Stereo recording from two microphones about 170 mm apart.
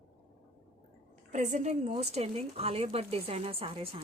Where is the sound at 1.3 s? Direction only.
45° right (ahead or behind).